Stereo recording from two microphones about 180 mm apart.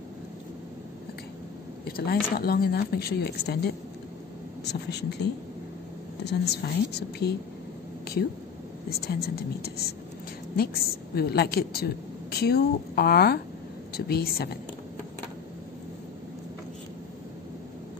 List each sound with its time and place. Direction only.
1.9 s a woman's voice: 60° left (ahead or behind)
8.9 s a woman's voice: 60° left (ahead or behind)